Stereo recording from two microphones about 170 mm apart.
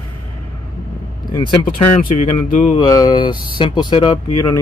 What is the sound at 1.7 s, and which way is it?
Speech, 55° left (ahead or behind).